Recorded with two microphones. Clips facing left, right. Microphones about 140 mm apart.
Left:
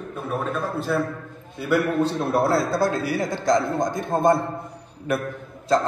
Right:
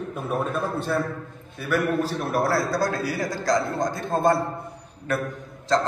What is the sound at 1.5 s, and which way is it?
A man's voice, 20° left (ahead or behind).